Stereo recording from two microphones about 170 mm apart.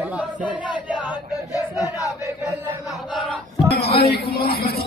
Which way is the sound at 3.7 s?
70° left (ahead or behind).